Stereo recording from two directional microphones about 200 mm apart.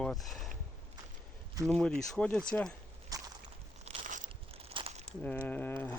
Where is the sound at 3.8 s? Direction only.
40° right (ahead or behind).